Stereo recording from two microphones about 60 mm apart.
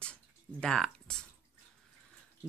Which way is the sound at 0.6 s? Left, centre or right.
Centre.